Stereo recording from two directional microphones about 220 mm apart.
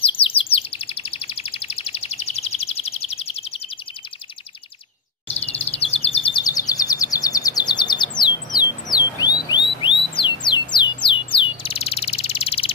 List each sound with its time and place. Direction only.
0.0 s chirp: 25° left (ahead or behind)
5.3 s bird vocalization: 30° left (ahead or behind)
8.9 s bird: 20° left (ahead or behind)